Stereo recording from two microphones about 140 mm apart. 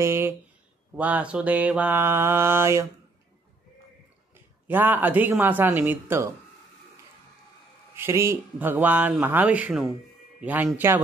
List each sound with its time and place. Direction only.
0.0 s speech: 20° right (ahead or behind)
4.3 s speech: 15° right (ahead or behind)
7.9 s speech: 20° right (ahead or behind)